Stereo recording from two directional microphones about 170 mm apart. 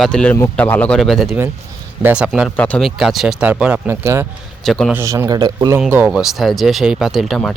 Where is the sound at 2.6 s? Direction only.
5° left (ahead or behind); by 4.3 s 15° right (ahead or behind).